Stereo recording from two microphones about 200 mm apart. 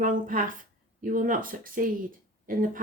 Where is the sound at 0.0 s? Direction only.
40° right (ahead or behind).